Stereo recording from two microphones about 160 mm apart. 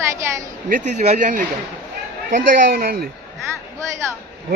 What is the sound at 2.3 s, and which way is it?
Speech, 65° right (ahead or behind).